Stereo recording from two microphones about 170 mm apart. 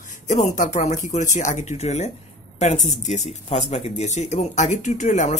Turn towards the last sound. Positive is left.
turn(degrees=45)  # may be behind; listen again after turning